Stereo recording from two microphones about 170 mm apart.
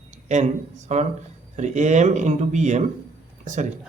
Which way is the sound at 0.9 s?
40° right (ahead or behind).